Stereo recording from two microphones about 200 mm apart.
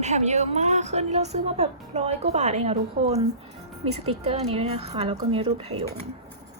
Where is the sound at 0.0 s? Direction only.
35° right (ahead or behind).